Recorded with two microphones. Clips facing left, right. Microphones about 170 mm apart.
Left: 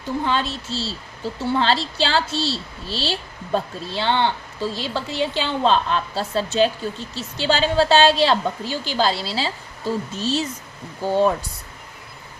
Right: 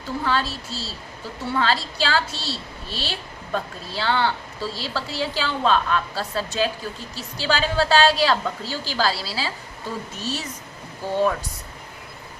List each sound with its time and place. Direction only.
0.3 s a woman's voice: 20° left (ahead or behind)